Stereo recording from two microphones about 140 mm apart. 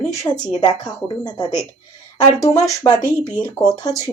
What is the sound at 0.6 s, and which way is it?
A woman's voice, 30° left (ahead or behind).